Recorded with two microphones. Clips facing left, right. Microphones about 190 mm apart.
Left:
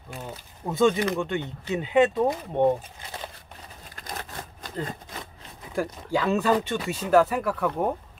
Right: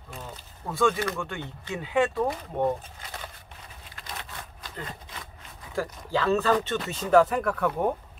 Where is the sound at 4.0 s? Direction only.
45° left (ahead or behind).